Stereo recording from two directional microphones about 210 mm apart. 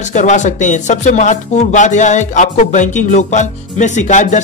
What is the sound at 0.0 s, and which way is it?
Speech, 35° left (ahead or behind).